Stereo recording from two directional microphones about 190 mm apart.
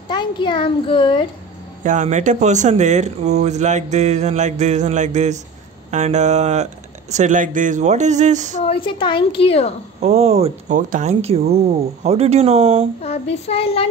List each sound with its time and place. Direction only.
0.1 s a woman's voice: 25° left (ahead or behind)
1.8 s speech: 40° right (ahead or behind)
8.5 s a woman's voice: 30° left (ahead or behind)
10.0 s speech: 35° right (ahead or behind)
13.0 s child singing: 35° left (ahead or behind)